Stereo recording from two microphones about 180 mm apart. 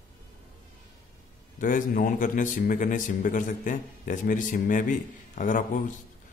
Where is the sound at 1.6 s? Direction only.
50° left (ahead or behind).